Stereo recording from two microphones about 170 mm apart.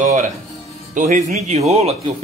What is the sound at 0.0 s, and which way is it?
Speech, 40° right (ahead or behind).